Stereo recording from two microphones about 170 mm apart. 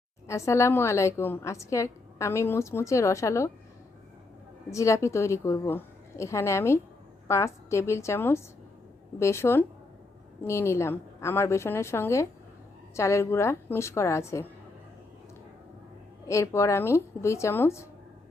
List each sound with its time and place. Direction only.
0.3 s a woman's voice: 15° left (ahead or behind)
4.7 s a woman's voice: 15° left (ahead or behind)
16.3 s a woman's voice: 15° left (ahead or behind)